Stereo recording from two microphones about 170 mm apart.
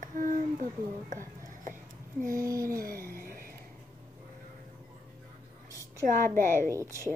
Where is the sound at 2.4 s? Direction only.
20° right (ahead or behind).